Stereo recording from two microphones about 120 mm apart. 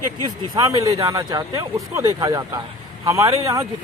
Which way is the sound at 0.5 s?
30° right (ahead or behind).